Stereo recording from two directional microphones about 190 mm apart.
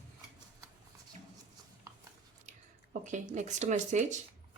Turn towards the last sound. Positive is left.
turn(degrees=-40)  # may be behind; listen again after turning